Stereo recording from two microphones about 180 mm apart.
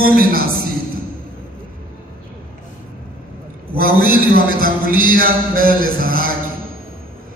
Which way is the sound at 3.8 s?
55° right (ahead or behind).